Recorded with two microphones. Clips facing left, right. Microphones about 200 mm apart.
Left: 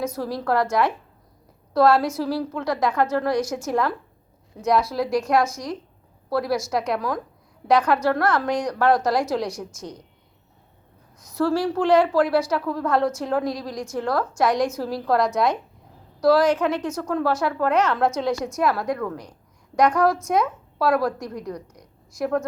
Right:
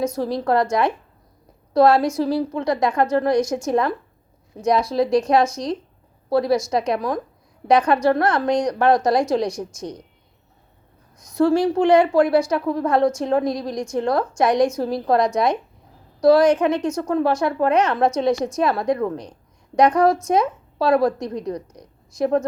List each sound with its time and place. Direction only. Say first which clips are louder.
0.2 s a woman's voice: right 2 dB; 20° right (ahead or behind)
11.3 s a woman's voice: right 5 dB; 20° right (ahead or behind)